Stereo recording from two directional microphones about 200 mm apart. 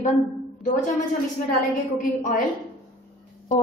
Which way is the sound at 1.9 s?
40° left (ahead or behind).